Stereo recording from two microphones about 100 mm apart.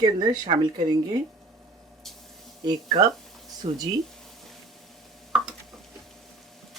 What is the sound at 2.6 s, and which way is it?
Speech, 45° right (ahead or behind).